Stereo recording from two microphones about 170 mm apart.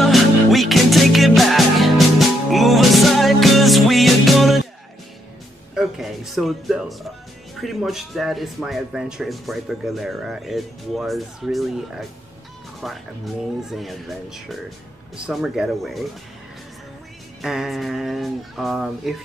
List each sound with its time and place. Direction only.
0.0 s music: centre (ahead or behind)
5.8 s speech: centre (ahead or behind)
17.4 s speech: centre (ahead or behind)